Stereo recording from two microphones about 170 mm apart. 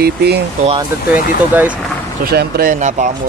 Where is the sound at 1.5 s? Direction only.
10° right (ahead or behind).